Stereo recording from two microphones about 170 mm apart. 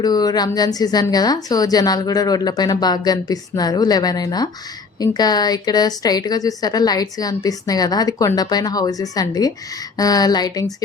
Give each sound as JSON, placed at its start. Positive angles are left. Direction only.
{"t": 0.0, "sound": "a woman's voice", "side_deg": 25}